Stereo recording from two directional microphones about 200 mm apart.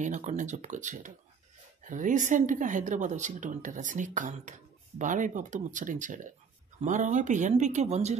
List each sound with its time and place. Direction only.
0.0 s speech: 35° right (ahead or behind)